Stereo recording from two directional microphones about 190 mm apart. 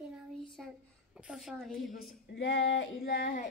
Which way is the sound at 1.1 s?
5° right (ahead or behind).